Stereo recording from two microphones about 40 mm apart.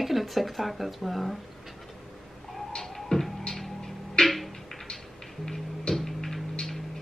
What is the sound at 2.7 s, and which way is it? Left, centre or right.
Music, centre.